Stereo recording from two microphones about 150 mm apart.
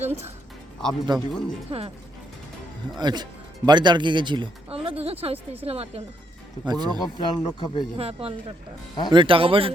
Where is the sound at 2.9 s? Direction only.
30° right (ahead or behind).